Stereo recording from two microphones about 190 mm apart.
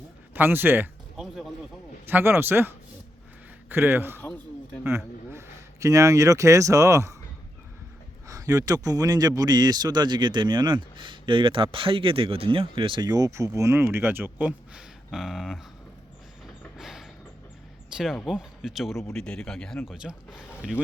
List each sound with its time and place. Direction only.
0.3 s a man's voice: 10° right (ahead or behind)
4.2 s a sound: 10° left (ahead or behind)
4.8 s speech: 15° right (ahead or behind)
8.3 s speech: 20° right (ahead or behind); by 15.6 s centre (ahead or behind)
16.7 s a sound: centre (ahead or behind)
17.9 s speech: centre (ahead or behind)